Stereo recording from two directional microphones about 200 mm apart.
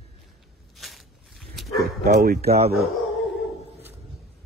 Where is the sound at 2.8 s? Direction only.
Centre (ahead or behind).